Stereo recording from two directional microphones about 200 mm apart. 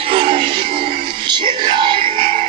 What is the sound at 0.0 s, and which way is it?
Music, 25° right (ahead or behind).